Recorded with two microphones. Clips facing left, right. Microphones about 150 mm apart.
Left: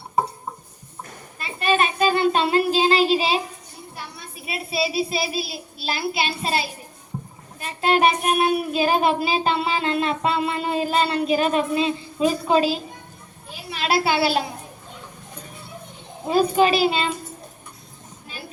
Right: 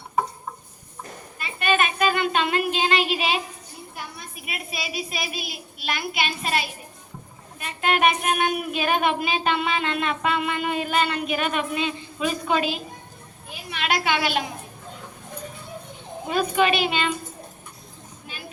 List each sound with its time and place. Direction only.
1.4 s a sound: 30° left (ahead or behind)
3.9 s a child's voice: 30° left (ahead or behind)
7.6 s child singing: 30° left (ahead or behind)
16.2 s child singing: 35° left (ahead or behind)